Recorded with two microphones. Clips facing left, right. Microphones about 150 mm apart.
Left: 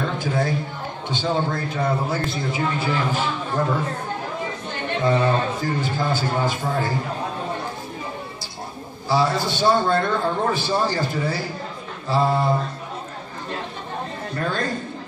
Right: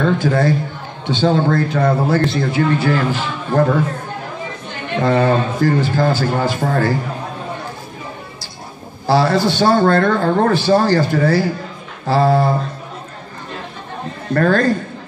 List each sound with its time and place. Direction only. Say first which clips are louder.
0.0 s a man's voice: right 8 dB; 85° right
5.0 s a man's voice: right 5 dB; 80° right
9.0 s a man's voice: right 6 dB; 90° right
14.3 s a man's voice: right 13 dB; 90° right